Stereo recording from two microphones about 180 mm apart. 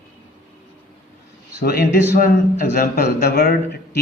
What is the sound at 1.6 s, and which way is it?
A man's voice, 60° left (ahead or behind).